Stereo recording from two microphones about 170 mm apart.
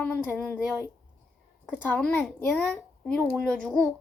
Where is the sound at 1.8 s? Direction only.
10° left (ahead or behind).